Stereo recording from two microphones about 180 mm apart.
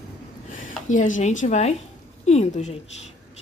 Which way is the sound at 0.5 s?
45° left (ahead or behind).